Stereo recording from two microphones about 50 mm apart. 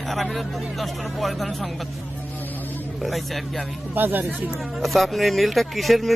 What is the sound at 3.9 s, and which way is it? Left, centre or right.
Speech, right.